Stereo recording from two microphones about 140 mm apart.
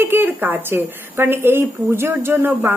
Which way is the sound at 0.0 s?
15° right (ahead or behind).